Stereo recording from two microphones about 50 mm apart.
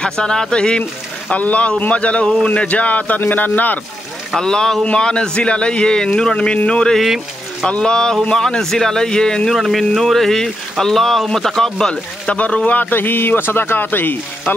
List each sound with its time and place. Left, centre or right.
0.0 s a man's voice: centre
1.3 s speech: left
4.4 s a man's voice: centre
9.6 s speech: centre
11.9 s speech: left